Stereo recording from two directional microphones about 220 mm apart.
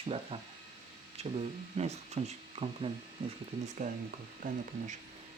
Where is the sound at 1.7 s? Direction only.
30° right (ahead or behind).